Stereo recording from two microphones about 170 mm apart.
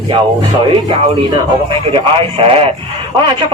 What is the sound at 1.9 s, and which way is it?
Speech, 35° right (ahead or behind).